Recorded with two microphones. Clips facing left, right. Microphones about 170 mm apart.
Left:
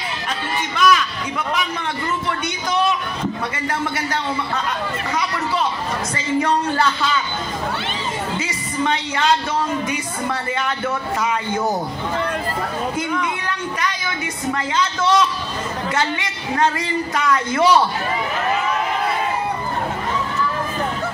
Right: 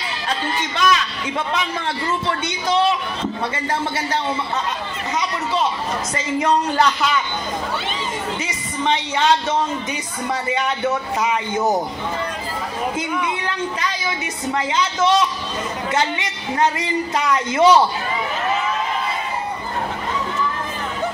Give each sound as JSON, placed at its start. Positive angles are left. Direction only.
{"t": 0.7, "sound": "a man's voice", "side_deg": -25}
{"t": 6.1, "sound": "a man's voice", "side_deg": -20}
{"t": 8.4, "sound": "a woman's voice", "side_deg": -20}
{"t": 10.5, "sound": "a man's voice", "side_deg": -20}
{"t": 13.7, "sound": "a man's voice", "side_deg": -25}